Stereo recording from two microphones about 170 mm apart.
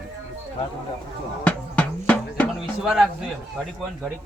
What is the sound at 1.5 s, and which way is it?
Music, 10° left (ahead or behind).